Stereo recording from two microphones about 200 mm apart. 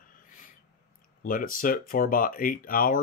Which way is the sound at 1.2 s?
45° left (ahead or behind).